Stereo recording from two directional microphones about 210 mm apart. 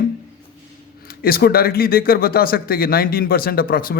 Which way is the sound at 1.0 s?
45° left (ahead or behind).